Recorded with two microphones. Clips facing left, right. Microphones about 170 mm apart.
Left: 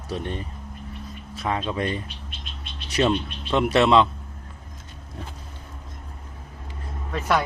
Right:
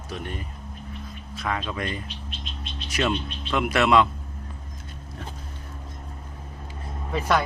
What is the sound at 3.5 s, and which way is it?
Speech, 25° left (ahead or behind).